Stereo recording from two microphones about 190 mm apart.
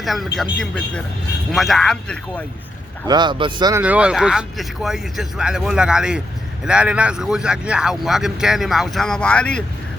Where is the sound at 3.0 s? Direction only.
25° right (ahead or behind).